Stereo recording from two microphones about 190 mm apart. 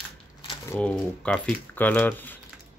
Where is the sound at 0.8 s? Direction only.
5° left (ahead or behind).